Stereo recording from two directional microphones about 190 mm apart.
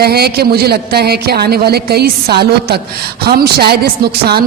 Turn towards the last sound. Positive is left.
turn(degrees=-55)  # may be behind; listen again after turning